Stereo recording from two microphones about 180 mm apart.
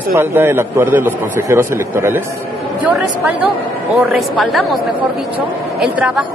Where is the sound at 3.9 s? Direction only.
Centre (ahead or behind).